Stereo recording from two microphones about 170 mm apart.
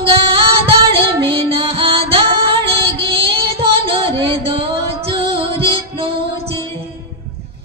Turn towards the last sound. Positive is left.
turn(degrees=-35)  # may be behind; listen again after turning